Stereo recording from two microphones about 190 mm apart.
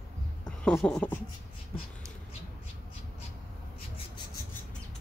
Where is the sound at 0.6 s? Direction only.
5° left (ahead or behind).